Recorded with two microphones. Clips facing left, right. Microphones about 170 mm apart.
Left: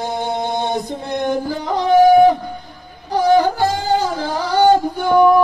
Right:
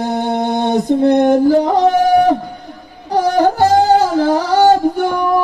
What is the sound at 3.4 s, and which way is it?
Music, 40° right (ahead or behind).